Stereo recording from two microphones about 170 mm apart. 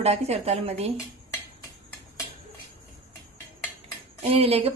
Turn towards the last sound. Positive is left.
turn(degrees=-35)  # may be behind; listen again after turning